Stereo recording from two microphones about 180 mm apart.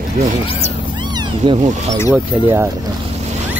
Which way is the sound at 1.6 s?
40° right (ahead or behind).